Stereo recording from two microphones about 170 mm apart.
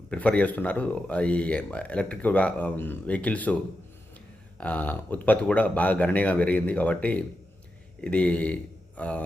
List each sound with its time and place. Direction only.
0.1 s a man's voice: 10° left (ahead or behind)